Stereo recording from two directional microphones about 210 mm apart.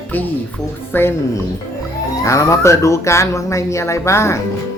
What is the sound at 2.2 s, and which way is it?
Mantra, 15° left (ahead or behind).